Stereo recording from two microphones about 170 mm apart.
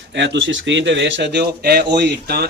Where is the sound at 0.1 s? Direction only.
90° right.